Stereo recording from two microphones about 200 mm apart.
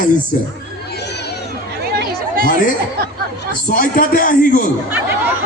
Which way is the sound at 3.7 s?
45° left (ahead or behind).